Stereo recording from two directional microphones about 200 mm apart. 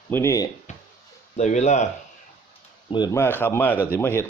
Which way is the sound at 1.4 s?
35° left (ahead or behind).